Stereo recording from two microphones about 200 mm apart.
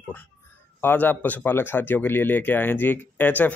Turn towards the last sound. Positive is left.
turn(degrees=10)  # may be behind; listen again after turning